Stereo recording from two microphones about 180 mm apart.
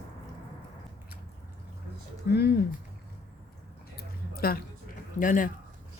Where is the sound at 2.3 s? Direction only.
65° left (ahead or behind).